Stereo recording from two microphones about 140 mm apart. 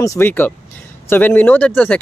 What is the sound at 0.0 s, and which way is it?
Speech, 20° left (ahead or behind).